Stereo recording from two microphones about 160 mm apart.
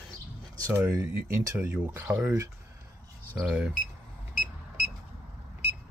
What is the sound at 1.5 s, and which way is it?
Speech, 10° right (ahead or behind).